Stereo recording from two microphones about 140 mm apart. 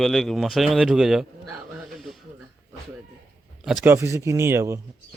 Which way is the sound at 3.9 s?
20° right (ahead or behind).